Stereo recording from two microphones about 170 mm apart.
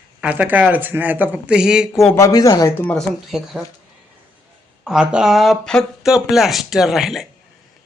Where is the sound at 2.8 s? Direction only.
5° left (ahead or behind).